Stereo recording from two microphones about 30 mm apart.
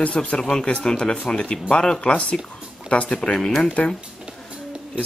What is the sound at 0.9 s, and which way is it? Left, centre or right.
Speech, left.